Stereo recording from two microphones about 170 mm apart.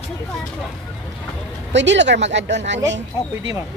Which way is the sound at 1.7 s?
90° right.